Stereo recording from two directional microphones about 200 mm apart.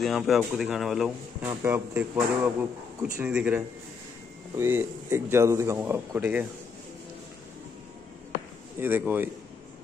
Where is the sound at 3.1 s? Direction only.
10° right (ahead or behind).